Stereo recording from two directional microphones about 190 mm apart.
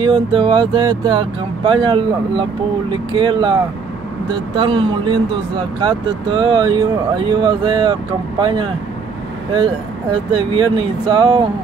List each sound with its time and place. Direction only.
0.0 s speech: 25° right (ahead or behind)
4.6 s speech: 25° right (ahead or behind)
10.3 s speech: 25° right (ahead or behind)